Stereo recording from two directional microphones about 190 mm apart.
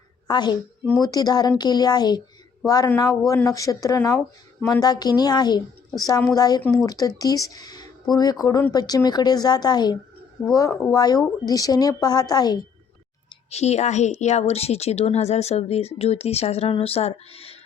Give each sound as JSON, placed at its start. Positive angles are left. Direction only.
{"t": 0.3, "sound": "speech", "side_deg": 20}
{"t": 6.6, "sound": "speech", "side_deg": 5}
{"t": 6.8, "sound": "speech", "side_deg": 20}
{"t": 13.5, "sound": "a woman's voice", "side_deg": 35}